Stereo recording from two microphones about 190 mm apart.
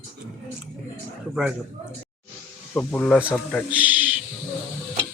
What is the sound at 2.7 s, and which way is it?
Speech, 5° left (ahead or behind).